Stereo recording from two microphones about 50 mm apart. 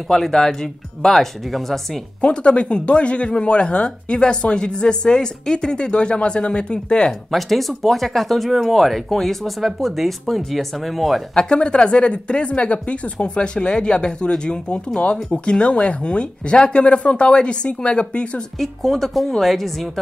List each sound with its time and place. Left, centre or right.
0.1 s speech: centre
2.2 s speech: left
7.2 s speech: centre
11.3 s speech: centre
18.6 s speech: centre